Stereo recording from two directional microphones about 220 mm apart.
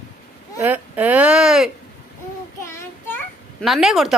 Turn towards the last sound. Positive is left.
turn(degrees=0)  # may be behind; listen again after turning